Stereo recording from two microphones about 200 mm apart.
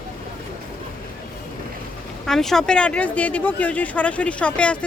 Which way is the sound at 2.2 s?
Centre (ahead or behind).